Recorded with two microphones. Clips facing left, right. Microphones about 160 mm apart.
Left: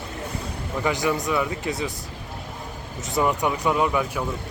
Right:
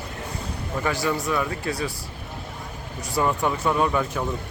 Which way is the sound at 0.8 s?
20° left (ahead or behind).